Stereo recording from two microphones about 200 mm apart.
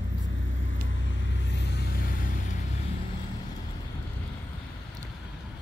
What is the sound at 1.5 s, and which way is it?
Vehicle, 55° left (ahead or behind).